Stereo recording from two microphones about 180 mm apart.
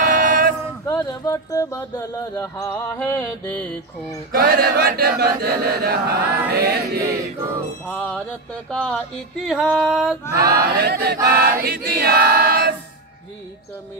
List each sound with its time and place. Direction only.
0.1 s male singing: 50° right (ahead or behind)
0.8 s speech: 20° left (ahead or behind)
4.3 s chant: 55° right (ahead or behind)
7.9 s speech: 5° left (ahead or behind)
8.6 s music: 5° left (ahead or behind)
10.3 s chant: 60° right (ahead or behind)